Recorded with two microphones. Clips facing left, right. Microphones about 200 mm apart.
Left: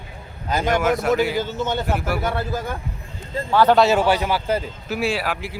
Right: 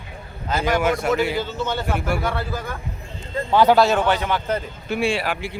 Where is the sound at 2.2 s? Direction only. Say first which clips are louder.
Left 1 dB; 20° left (ahead or behind).